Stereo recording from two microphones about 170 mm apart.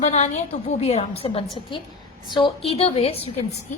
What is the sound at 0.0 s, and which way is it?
A woman's voice, 40° left (ahead or behind).